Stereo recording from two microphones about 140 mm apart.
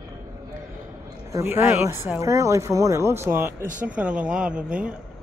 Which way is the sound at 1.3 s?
20° right (ahead or behind).